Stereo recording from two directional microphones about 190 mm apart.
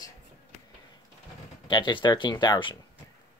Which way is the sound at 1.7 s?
25° left (ahead or behind).